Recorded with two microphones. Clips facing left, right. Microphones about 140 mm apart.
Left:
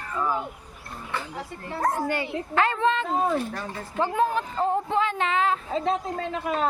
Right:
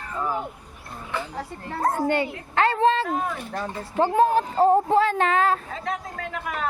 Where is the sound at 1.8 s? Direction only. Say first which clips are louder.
Right 3 dB; 25° right (ahead or behind).